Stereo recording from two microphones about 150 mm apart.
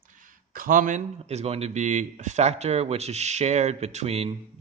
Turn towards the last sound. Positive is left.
turn(degrees=-45)  # may be behind; listen again after turning